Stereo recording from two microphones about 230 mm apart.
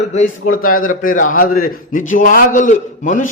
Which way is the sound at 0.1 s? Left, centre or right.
Left.